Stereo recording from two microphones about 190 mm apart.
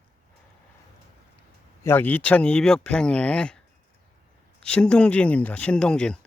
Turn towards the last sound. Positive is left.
turn(degrees=5)  # may be behind; listen again after turning